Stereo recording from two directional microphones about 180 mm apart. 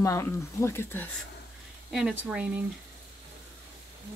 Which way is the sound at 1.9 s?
5° right (ahead or behind).